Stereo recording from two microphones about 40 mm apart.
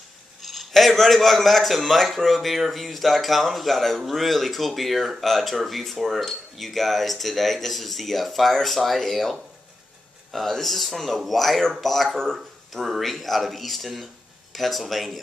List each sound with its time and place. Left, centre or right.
0.4 s a man's voice: centre
12.8 s a man's voice: centre